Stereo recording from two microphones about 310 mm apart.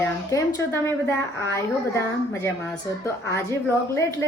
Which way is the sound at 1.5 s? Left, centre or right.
Centre.